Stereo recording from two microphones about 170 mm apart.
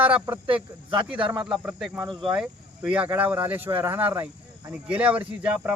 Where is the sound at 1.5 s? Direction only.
5° right (ahead or behind).